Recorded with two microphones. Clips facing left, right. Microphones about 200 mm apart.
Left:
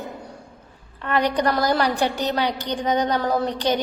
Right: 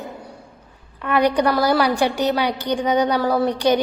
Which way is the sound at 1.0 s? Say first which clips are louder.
Right 3 dB; 10° right (ahead or behind).